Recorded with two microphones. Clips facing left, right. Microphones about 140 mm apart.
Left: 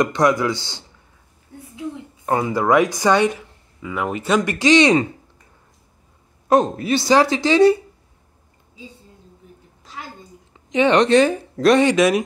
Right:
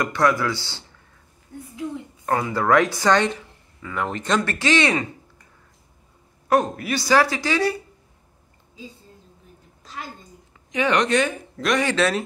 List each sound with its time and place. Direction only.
0.0 s a woman's voice: 20° left (ahead or behind)
6.5 s speech: 25° left (ahead or behind)
10.7 s speech: 25° left (ahead or behind)
11.8 s a woman's voice: 15° left (ahead or behind)